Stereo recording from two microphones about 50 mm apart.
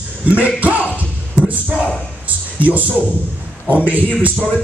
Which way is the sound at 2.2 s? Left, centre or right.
Right.